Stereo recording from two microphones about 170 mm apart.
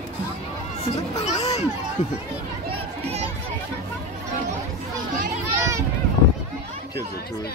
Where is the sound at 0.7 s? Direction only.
40° left (ahead or behind).